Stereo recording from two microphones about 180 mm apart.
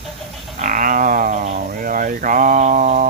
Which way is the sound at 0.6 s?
50° right (ahead or behind).